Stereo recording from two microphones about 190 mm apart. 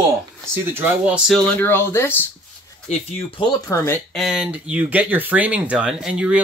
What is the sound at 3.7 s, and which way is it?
Speech, 15° left (ahead or behind).